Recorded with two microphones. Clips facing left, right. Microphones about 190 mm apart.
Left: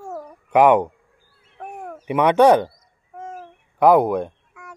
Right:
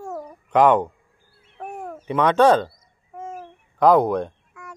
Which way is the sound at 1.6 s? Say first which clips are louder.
Right 1 dB; 10° right (ahead or behind).